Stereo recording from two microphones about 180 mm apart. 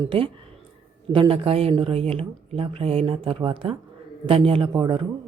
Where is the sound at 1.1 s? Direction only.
30° right (ahead or behind).